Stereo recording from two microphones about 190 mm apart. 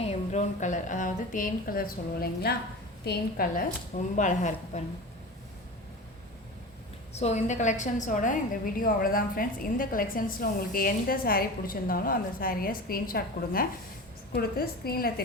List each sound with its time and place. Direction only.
0.0 s a woman's voice: 35° left (ahead or behind); by 3.7 s 55° left (ahead or behind)
4.2 s a woman's voice: 40° left (ahead or behind)
7.1 s a woman's voice: 35° left (ahead or behind); by 15.1 s 55° left (ahead or behind)